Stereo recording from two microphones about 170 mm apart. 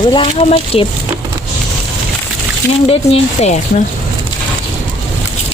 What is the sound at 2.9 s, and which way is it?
Speech, 40° left (ahead or behind).